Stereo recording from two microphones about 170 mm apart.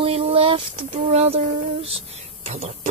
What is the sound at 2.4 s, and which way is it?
Speech, 40° right (ahead or behind).